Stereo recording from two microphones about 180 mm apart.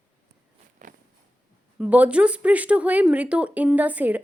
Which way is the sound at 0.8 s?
45° right (ahead or behind).